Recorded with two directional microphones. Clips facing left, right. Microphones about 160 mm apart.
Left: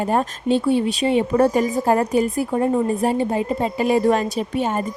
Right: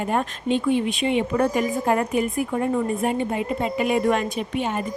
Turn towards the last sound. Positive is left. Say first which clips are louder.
# left 3 dB
turn(degrees=40)  # may be behind; listen again after turning